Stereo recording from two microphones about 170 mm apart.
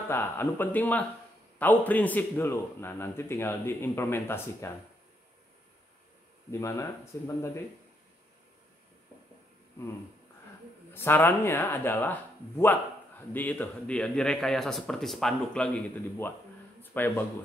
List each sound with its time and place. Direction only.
0.1 s a man's voice: 15° left (ahead or behind)
6.6 s a man's voice: 15° left (ahead or behind)
10.9 s a man's voice: 15° left (ahead or behind)
16.8 s a sound: 10° left (ahead or behind)